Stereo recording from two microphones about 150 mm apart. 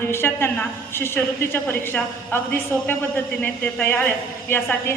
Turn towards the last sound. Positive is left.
turn(degrees=15)  # may be behind; listen again after turning